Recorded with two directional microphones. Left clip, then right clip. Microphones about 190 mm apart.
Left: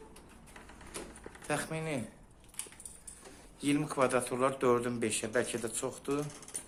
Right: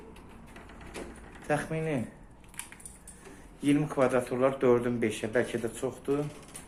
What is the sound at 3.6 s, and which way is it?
A man's voice, centre (ahead or behind).